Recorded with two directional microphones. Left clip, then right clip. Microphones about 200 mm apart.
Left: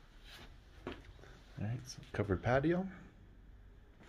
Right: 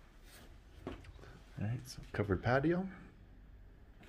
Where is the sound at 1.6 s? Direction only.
5° right (ahead or behind).